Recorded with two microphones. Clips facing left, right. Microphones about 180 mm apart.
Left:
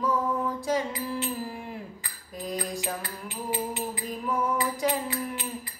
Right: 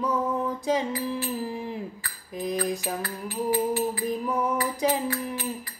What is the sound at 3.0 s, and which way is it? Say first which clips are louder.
Music: right 6 dB; 20° left (ahead or behind).